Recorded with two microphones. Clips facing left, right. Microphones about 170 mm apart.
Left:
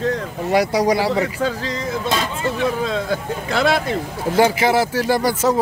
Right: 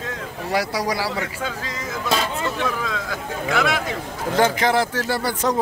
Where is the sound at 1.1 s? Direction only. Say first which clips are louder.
Left 7 dB; 35° left (ahead or behind).